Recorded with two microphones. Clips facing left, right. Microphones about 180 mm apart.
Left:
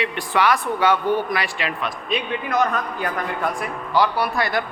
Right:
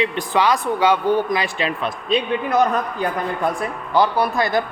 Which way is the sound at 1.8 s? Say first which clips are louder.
Right 6 dB; 30° right (ahead or behind).